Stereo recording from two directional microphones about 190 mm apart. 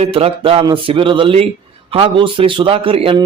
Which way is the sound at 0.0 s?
30° right (ahead or behind).